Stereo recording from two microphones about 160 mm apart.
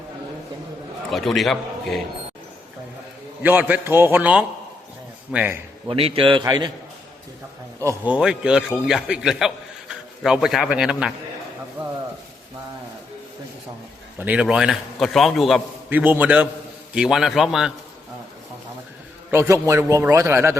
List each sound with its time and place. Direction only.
1.1 s a man's voice: centre (ahead or behind)
3.4 s a man's voice: 10° right (ahead or behind)
5.9 s a man's voice: 35° right (ahead or behind)
7.8 s speech: 20° right (ahead or behind)
8.1 s a man's voice: 5° right (ahead or behind)
14.2 s a man's voice: 10° right (ahead or behind)
15.9 s a man's voice: 10° right (ahead or behind)
19.3 s a man's voice: 15° right (ahead or behind)